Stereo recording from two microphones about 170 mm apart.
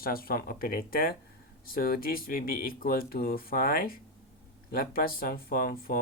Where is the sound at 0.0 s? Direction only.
60° left (ahead or behind).